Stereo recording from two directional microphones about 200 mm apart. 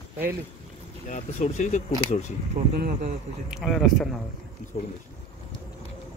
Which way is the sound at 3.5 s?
Centre (ahead or behind).